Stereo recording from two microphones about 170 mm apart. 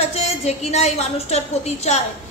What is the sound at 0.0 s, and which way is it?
A woman's voice, 40° left (ahead or behind).